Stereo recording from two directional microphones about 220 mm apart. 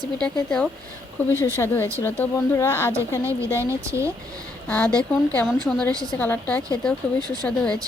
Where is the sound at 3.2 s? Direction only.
10° right (ahead or behind).